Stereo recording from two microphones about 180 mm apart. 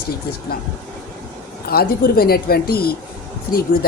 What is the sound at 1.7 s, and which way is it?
Speech, 60° left (ahead or behind).